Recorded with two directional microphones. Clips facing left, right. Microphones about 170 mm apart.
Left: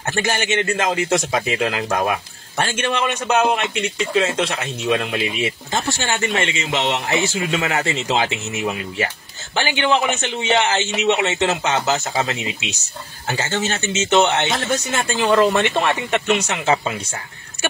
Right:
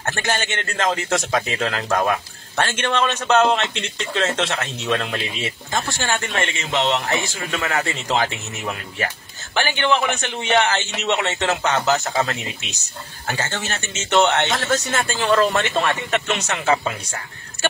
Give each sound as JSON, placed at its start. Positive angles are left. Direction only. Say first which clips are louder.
{"t": 0.0, "sound": "a man's voice", "louder": "left 2 dB", "side_deg": 20}
{"t": 5.7, "sound": "a man's voice", "louder": "right 2 dB", "side_deg": 20}
{"t": 9.6, "sound": "a man's voice", "louder": "left 1 dB", "side_deg": 15}